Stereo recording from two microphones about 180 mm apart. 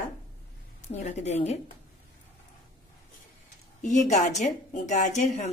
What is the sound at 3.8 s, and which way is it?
A woman's voice, 40° left (ahead or behind).